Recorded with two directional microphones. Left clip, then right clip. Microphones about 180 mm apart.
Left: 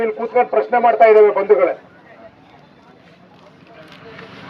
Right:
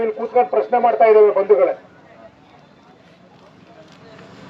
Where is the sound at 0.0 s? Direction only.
60° right (ahead or behind).